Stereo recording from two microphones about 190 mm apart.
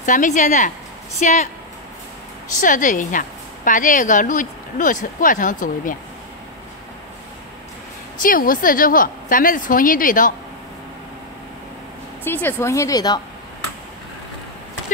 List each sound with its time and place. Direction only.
0.0 s speech: 40° left (ahead or behind)
2.6 s a woman's voice: 45° left (ahead or behind)
8.2 s a woman's voice: 45° left (ahead or behind)
12.3 s speech: 10° left (ahead or behind)